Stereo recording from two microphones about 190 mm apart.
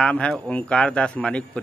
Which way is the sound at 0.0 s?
5° left (ahead or behind).